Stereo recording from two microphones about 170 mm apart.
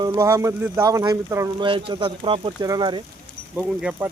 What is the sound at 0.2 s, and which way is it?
Speech, 15° right (ahead or behind).